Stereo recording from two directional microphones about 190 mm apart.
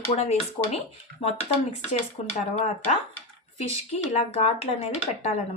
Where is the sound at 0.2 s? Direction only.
35° left (ahead or behind).